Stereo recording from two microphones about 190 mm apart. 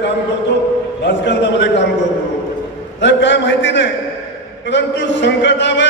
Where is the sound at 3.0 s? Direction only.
70° left (ahead or behind).